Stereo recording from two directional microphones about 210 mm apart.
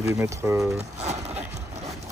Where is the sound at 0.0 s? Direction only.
15° right (ahead or behind).